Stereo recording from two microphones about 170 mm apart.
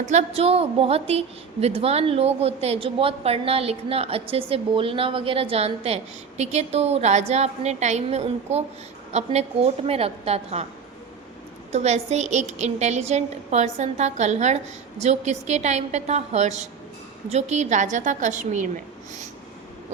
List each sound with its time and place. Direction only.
0.0 s a woman's voice: 45° right (ahead or behind)
11.7 s a woman's voice: 40° right (ahead or behind)